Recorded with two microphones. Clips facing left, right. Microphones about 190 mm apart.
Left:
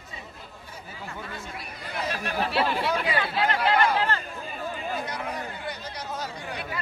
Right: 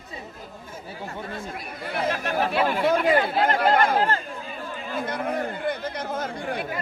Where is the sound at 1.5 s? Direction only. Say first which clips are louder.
Right 5 dB; 50° right (ahead or behind).